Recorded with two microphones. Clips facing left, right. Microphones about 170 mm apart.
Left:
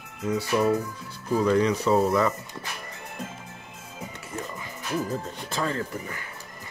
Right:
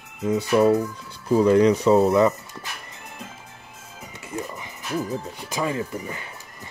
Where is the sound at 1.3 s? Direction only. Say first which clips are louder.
Right 6 dB; 30° right (ahead or behind).